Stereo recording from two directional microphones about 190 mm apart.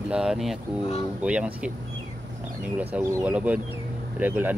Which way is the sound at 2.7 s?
10° right (ahead or behind).